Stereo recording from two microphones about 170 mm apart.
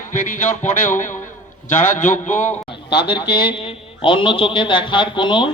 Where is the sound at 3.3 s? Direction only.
30° left (ahead or behind).